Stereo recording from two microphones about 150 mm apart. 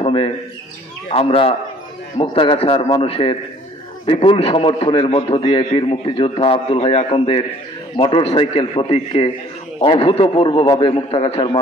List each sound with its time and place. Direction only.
0.0 s bird: 40° left (ahead or behind)
1.1 s a man's voice: 40° left (ahead or behind)